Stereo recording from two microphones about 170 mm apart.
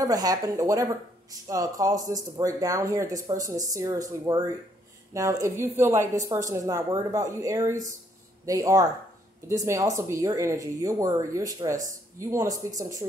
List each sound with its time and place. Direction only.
0.0 s speech: 20° right (ahead or behind)